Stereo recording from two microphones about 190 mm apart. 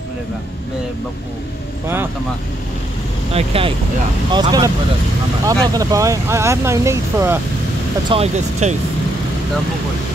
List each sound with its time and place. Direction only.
3.3 s speech: 30° right (ahead or behind); by 7.3 s 15° right (ahead or behind)
8.1 s speech: 35° right (ahead or behind)